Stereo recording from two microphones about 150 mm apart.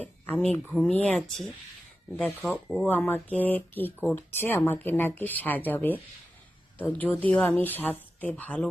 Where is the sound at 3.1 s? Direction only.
10° left (ahead or behind).